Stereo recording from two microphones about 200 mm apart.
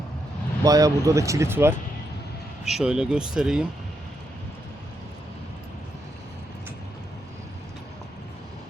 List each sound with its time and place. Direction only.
0.6 s speech: 15° right (ahead or behind)